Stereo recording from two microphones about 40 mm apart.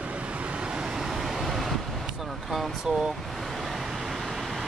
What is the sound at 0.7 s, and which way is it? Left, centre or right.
Vehicle, centre.